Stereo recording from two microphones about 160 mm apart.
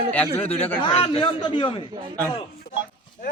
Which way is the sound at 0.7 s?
30° left (ahead or behind).